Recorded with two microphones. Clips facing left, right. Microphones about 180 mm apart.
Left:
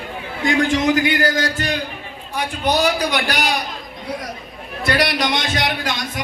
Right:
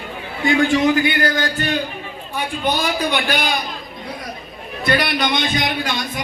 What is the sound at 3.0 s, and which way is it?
Speech, 80° left.